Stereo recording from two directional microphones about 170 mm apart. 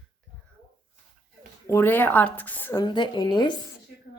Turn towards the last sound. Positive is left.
turn(degrees=25)  # may be behind; listen again after turning